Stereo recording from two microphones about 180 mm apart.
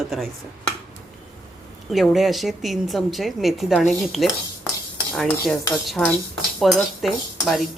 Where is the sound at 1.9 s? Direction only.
Centre (ahead or behind).